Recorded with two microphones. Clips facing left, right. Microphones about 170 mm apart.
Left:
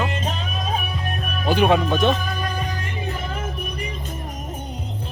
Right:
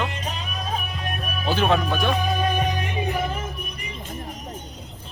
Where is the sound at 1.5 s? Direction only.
15° left (ahead or behind).